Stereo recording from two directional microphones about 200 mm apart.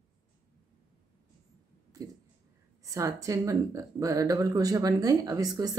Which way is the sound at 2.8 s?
15° right (ahead or behind).